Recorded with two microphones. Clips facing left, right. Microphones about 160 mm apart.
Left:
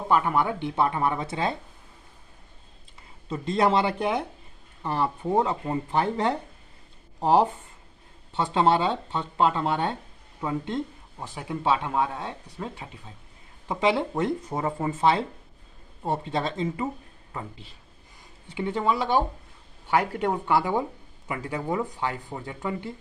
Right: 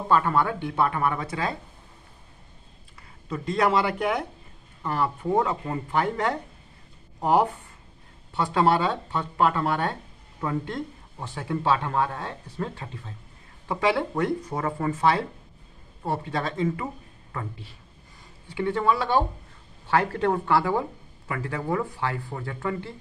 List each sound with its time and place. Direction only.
0.1 s speech: 15° left (ahead or behind)
3.0 s speech: 25° left (ahead or behind)